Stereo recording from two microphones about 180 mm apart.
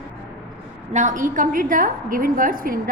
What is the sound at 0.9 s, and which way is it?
A woman's voice, 45° right (ahead or behind).